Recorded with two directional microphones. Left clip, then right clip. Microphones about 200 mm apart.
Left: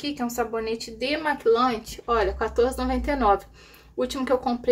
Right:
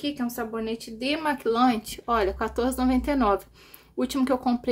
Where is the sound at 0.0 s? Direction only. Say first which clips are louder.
Left 3 dB; 25° right (ahead or behind).